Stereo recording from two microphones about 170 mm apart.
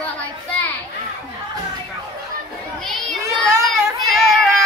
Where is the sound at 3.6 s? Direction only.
Centre (ahead or behind).